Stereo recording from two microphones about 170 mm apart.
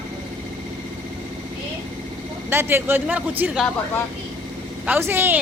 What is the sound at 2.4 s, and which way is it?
Speech, 15° right (ahead or behind).